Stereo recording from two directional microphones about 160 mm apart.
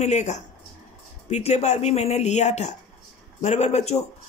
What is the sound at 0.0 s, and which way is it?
Speech, 45° left (ahead or behind).